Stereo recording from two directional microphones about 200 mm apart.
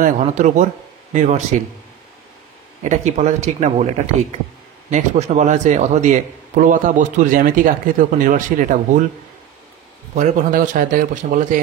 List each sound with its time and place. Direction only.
0.0 s a man's voice: 40° right (ahead or behind)
2.8 s a man's voice: 35° right (ahead or behind)
10.1 s a man's voice: 40° right (ahead or behind)